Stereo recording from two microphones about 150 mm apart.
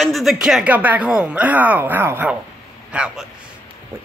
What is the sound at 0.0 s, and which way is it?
A man's voice, centre (ahead or behind).